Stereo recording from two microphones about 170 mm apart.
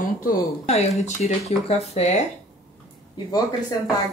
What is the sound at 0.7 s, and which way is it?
Speech, 40° left (ahead or behind).